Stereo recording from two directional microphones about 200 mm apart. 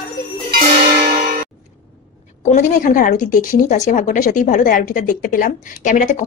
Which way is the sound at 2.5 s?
40° left (ahead or behind).